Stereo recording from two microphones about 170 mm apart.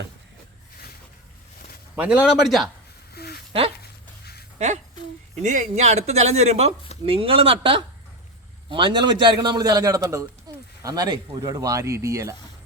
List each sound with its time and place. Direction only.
2.0 s a man's voice: 5° right (ahead or behind)
3.2 s a sound: 70° left (ahead or behind)
4.5 s a man's voice: 45° right (ahead or behind); by 12.3 s 15° right (ahead or behind)